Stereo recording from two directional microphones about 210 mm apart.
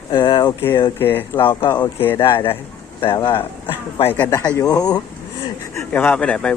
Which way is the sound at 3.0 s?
25° left (ahead or behind).